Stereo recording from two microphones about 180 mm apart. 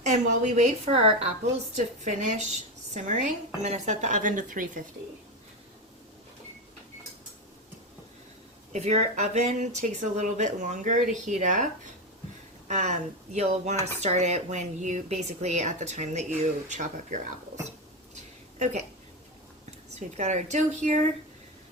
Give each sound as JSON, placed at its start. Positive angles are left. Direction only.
{"t": 0.0, "sound": "speech", "side_deg": -40}
{"t": 1.7, "sound": "speech", "side_deg": -45}
{"t": 8.7, "sound": "speech", "side_deg": -40}
{"t": 12.6, "sound": "speech", "side_deg": -40}
{"t": 19.9, "sound": "speech", "side_deg": -40}